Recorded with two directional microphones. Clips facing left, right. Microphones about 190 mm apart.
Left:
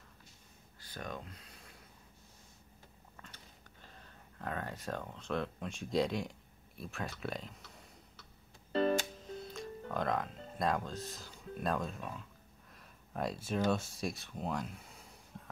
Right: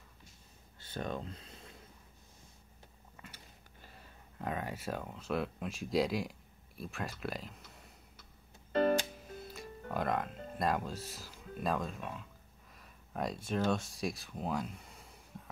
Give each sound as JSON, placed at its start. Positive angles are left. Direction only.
{"t": 0.7, "sound": "a sound", "side_deg": -25}
{"t": 3.2, "sound": "biting", "side_deg": -10}
{"t": 3.8, "sound": "speech", "side_deg": -10}
{"t": 9.3, "sound": "speech", "side_deg": -5}
{"t": 12.7, "sound": "a sound", "side_deg": 0}
{"t": 13.7, "sound": "speech", "side_deg": 0}